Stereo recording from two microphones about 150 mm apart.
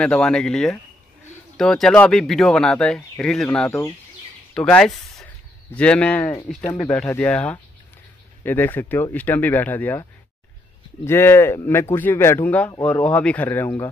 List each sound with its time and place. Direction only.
0.0 s speech: 5° left (ahead or behind)
3.6 s speech: 15° left (ahead or behind)
4.6 s speech: 5° left (ahead or behind)
6.7 s speech: 20° left (ahead or behind)
7.1 s speech: 10° left (ahead or behind)
11.1 s speech: 15° left (ahead or behind)